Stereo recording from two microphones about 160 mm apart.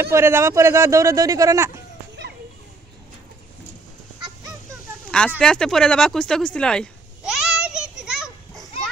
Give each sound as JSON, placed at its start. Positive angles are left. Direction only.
{"t": 0.0, "sound": "speech", "side_deg": -15}
{"t": 5.4, "sound": "speech", "side_deg": 5}
{"t": 7.3, "sound": "a sound", "side_deg": -5}
{"t": 8.0, "sound": "children playing", "side_deg": -5}